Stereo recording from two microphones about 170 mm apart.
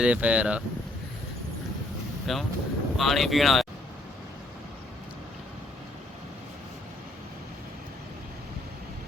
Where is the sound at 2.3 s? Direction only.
Centre (ahead or behind).